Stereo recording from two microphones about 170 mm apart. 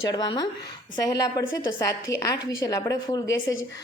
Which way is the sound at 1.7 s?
20° left (ahead or behind).